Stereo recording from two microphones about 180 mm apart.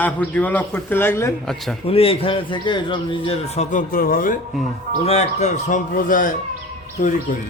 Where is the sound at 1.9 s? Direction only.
30° left (ahead or behind).